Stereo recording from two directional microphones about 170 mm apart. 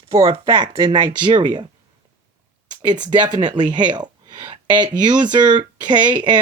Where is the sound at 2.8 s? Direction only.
25° right (ahead or behind).